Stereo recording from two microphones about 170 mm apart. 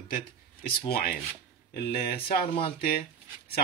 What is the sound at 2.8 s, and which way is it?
Speech, 60° left (ahead or behind).